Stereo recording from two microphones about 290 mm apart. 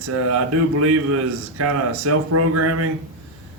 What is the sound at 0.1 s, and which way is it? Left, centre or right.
Speech, right.